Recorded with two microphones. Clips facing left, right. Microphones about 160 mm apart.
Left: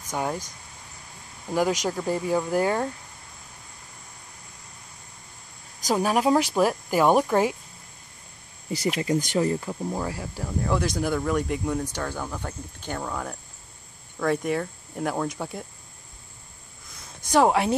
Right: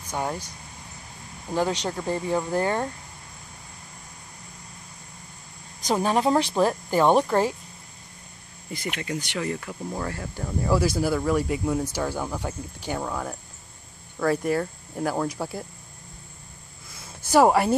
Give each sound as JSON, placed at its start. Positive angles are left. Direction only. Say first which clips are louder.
{"t": 1.5, "sound": "speech", "louder": "left 1 dB", "side_deg": 10}
{"t": 6.0, "sound": "speech", "louder": "even", "side_deg": 10}
{"t": 8.7, "sound": "speech", "louder": "left 6 dB", "side_deg": 35}
{"t": 9.8, "sound": "speech", "louder": "right 1 dB", "side_deg": 10}
{"t": 16.9, "sound": "a sound", "louder": "right 2 dB", "side_deg": -5}